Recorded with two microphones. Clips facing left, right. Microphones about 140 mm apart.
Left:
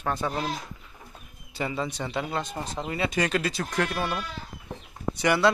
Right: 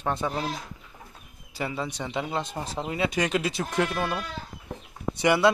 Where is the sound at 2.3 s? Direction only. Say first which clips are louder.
Even; 25° right (ahead or behind).